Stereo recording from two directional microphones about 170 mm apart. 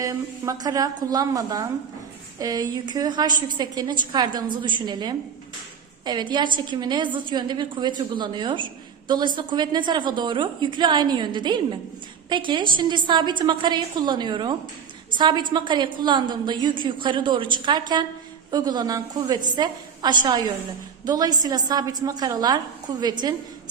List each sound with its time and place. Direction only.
0.0 s a woman's voice: 20° right (ahead or behind)